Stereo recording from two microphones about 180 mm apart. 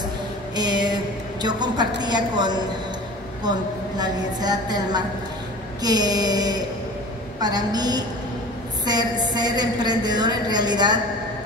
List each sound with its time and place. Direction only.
0.6 s a woman's voice: 25° right (ahead or behind)
4.0 s a woman's voice: 20° right (ahead or behind)